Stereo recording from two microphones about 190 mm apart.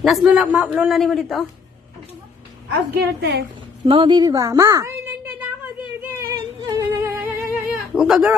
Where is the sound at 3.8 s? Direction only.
25° right (ahead or behind).